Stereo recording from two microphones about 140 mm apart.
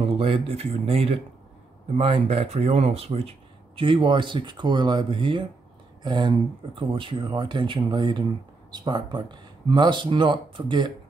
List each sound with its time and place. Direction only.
0.2 s speech: 40° right (ahead or behind)